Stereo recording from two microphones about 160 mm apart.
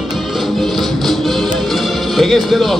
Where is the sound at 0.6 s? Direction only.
Centre (ahead or behind).